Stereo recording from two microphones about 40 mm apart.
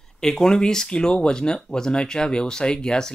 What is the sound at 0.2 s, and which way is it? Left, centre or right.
Speech, centre.